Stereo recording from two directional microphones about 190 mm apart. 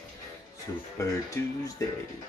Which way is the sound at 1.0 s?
15° left (ahead or behind).